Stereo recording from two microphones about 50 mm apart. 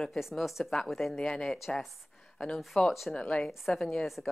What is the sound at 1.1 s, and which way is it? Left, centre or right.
Speech, centre.